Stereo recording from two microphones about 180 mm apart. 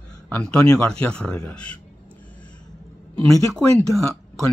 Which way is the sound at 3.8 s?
15° right (ahead or behind).